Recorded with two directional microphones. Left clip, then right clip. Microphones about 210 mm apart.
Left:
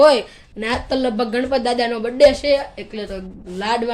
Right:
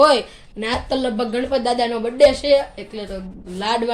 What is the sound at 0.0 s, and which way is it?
A man's voice, 5° left (ahead or behind).